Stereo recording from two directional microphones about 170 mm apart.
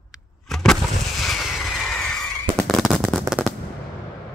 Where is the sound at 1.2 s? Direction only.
Centre (ahead or behind).